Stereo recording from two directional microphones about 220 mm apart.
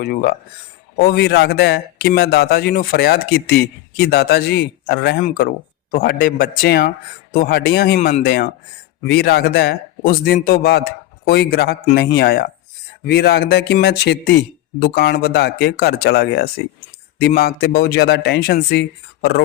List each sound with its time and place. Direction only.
0.0 s a man's voice: 45° left (ahead or behind)